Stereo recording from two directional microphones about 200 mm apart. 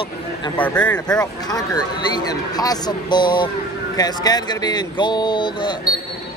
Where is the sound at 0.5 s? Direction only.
5° left (ahead or behind).